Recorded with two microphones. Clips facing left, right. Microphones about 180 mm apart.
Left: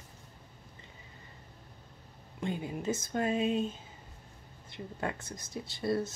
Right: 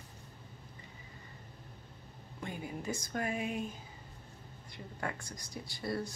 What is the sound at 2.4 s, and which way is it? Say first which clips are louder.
Speech: left 6 dB; 20° left (ahead or behind).